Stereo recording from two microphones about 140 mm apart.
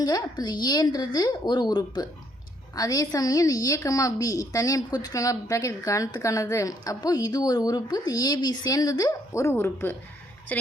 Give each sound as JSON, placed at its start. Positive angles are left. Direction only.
{"t": 0.0, "sound": "a woman's voice", "side_deg": 30}